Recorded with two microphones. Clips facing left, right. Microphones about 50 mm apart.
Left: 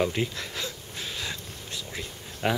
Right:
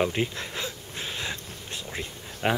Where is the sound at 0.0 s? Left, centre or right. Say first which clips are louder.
Right 1 dB; centre.